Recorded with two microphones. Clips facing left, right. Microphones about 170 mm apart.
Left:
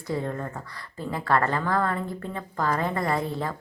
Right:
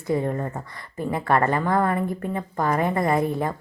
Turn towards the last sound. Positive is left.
turn(degrees=-15)  # may be behind; listen again after turning